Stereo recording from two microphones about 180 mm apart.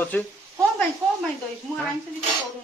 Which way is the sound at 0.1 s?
10° left (ahead or behind).